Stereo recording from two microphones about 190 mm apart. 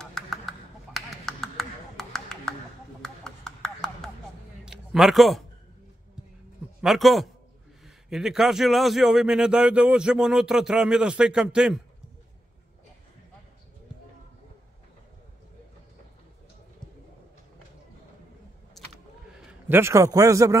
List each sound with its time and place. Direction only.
0.0 s a sound: centre (ahead or behind)
6.8 s speech: centre (ahead or behind)
18.8 s vehicle: centre (ahead or behind)
19.7 s speech: 15° right (ahead or behind)